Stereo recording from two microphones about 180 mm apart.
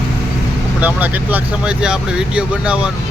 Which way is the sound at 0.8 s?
10° right (ahead or behind).